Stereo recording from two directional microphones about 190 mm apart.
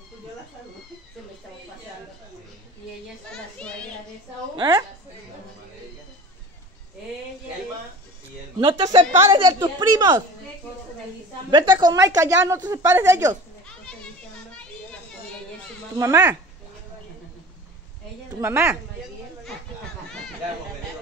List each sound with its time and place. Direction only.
3.3 s a child's voice: 5° left (ahead or behind)
8.5 s a woman's voice: 30° right (ahead or behind)
11.5 s a woman's voice: 25° right (ahead or behind)
16.0 s a woman's voice: 15° right (ahead or behind)
18.4 s a woman's voice: 10° right (ahead or behind)